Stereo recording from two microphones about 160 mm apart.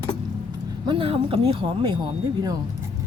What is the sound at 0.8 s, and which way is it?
Speech, 35° right (ahead or behind).